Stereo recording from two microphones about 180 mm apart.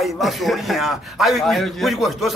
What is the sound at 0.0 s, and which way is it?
Speech, centre (ahead or behind).